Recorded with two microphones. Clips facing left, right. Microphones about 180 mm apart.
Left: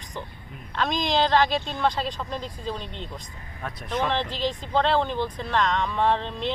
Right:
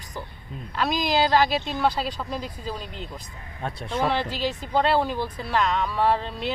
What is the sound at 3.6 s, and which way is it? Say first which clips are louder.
Speech: right 3 dB; 25° right (ahead or behind).